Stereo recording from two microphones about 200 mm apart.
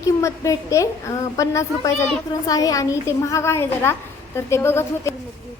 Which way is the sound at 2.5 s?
15° left (ahead or behind).